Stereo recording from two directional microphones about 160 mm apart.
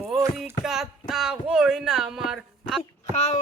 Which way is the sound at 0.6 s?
5° right (ahead or behind).